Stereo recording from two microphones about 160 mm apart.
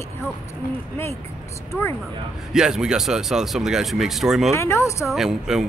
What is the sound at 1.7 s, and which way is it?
Speech, 15° left (ahead or behind).